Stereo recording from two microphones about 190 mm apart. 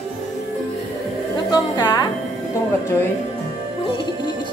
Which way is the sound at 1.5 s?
20° left (ahead or behind).